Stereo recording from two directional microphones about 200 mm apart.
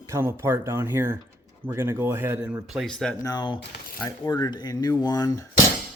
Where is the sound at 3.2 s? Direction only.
20° left (ahead or behind).